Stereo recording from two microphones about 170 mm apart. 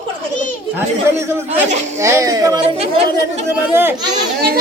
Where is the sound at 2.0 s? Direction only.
15° right (ahead or behind).